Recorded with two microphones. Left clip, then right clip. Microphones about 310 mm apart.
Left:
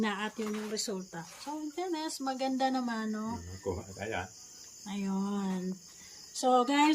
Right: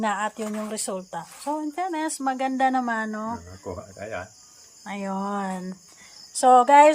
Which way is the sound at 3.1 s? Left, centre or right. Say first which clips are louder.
Right 8 dB; right.